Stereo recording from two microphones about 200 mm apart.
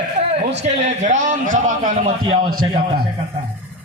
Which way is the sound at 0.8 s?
35° right (ahead or behind).